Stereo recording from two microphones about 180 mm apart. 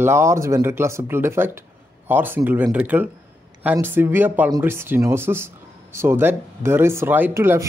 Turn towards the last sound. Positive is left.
turn(degrees=-15)  # may be behind; listen again after turning